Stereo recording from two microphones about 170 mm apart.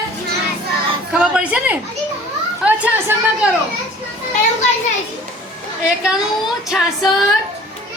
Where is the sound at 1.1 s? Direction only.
5° right (ahead or behind).